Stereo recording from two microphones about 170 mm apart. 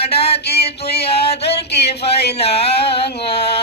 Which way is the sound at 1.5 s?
75° left (ahead or behind).